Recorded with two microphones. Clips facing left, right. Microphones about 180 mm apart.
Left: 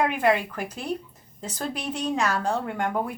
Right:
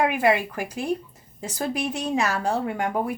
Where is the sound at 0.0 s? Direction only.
10° right (ahead or behind).